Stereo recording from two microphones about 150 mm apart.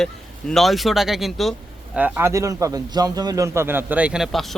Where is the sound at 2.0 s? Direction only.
10° right (ahead or behind).